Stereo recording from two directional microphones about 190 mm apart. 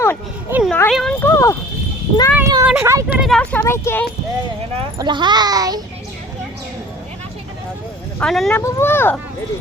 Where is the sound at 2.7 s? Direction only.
10° right (ahead or behind).